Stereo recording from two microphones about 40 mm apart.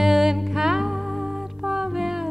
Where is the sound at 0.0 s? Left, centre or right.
Centre.